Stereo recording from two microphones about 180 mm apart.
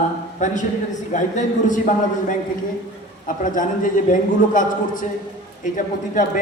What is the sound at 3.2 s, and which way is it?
A man's voice, 45° left (ahead or behind).